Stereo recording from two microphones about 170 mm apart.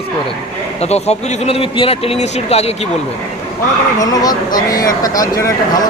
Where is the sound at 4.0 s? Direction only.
20° left (ahead or behind).